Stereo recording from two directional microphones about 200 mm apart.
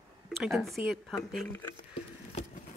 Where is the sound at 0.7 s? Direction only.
Centre (ahead or behind).